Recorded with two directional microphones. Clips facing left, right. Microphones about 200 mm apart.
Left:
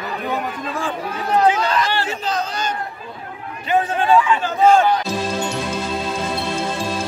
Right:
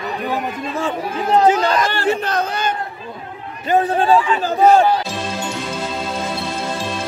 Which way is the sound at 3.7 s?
35° right (ahead or behind).